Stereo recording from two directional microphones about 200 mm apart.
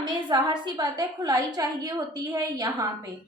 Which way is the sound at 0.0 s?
20° right (ahead or behind).